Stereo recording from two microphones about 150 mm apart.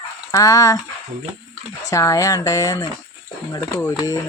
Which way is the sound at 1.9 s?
20° left (ahead or behind).